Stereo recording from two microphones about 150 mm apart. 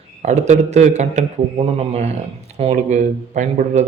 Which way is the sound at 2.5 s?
50° right (ahead or behind).